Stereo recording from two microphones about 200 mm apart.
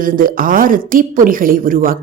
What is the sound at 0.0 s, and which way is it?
A woman's voice, 45° right (ahead or behind).